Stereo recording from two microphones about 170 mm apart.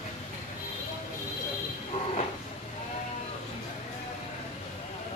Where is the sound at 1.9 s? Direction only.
40° left (ahead or behind).